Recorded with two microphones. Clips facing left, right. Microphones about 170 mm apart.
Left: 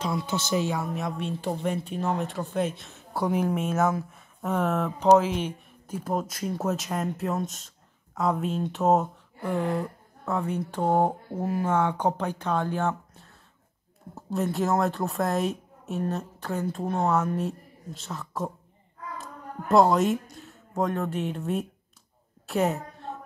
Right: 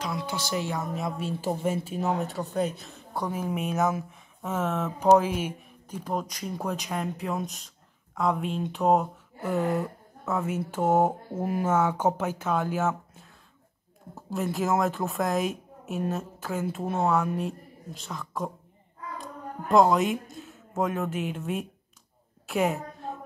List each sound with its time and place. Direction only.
0.0 s speech: 25° left (ahead or behind)
0.9 s a woman's voice: centre (ahead or behind)
5.1 s speech: 10° right (ahead or behind)
5.9 s a woman's voice: 5° left (ahead or behind)